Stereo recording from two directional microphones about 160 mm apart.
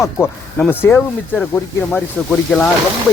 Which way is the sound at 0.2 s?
15° left (ahead or behind).